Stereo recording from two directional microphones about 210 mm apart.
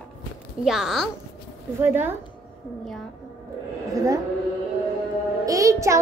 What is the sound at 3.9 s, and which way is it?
Speech, 15° right (ahead or behind).